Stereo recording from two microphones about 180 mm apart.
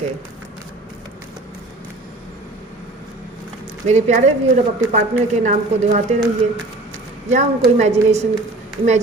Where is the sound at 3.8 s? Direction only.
40° right (ahead or behind).